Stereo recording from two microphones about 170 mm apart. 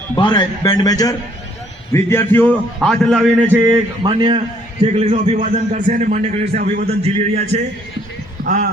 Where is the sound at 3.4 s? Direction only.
15° right (ahead or behind).